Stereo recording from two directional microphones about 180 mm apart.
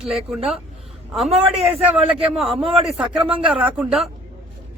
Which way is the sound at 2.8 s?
Centre (ahead or behind).